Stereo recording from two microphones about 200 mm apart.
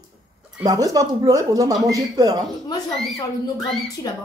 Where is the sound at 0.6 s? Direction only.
20° right (ahead or behind).